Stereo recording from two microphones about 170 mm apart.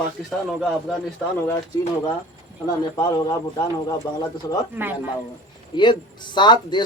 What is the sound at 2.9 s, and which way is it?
Speech, 25° left (ahead or behind).